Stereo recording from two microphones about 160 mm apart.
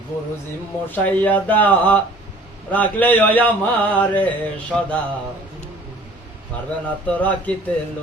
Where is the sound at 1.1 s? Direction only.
10° left (ahead or behind).